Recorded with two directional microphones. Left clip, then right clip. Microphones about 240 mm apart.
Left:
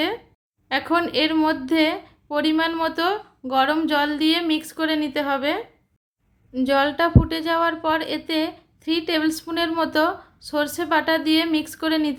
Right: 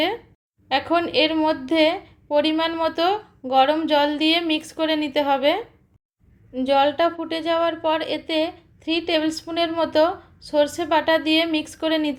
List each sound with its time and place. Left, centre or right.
0.7 s a woman's voice: centre
6.5 s a woman's voice: centre